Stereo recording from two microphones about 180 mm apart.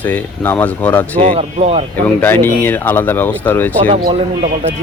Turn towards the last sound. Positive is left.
turn(degrees=-30)  # may be behind; listen again after turning